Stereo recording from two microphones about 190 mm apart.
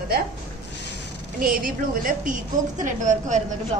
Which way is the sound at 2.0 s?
45° right (ahead or behind).